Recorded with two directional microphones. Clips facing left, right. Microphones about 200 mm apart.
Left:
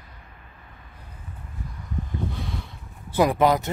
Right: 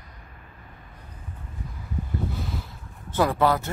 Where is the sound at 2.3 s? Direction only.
5° right (ahead or behind).